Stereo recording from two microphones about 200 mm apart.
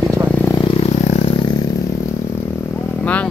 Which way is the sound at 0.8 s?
35° left (ahead or behind).